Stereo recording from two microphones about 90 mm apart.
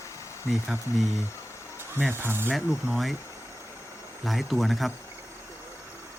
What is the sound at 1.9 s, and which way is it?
Speech, 20° right (ahead or behind).